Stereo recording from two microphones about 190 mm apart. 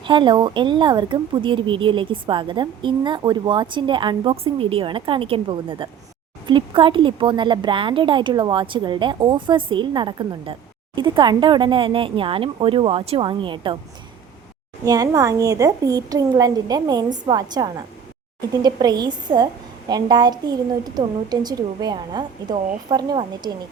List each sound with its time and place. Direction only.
0.0 s a woman's voice: 25° right (ahead or behind)
14.8 s a woman's voice: 20° right (ahead or behind)